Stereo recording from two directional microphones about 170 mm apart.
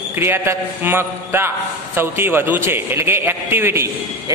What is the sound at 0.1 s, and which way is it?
A man's voice, 15° right (ahead or behind).